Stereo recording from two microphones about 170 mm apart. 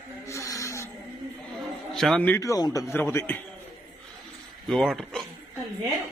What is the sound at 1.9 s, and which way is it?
A man's voice, centre (ahead or behind).